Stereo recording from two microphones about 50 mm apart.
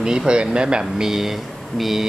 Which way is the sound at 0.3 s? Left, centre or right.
Centre.